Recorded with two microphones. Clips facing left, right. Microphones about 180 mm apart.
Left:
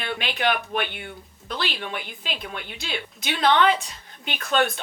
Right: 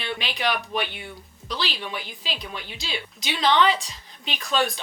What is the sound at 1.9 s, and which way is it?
Speech, 55° left (ahead or behind).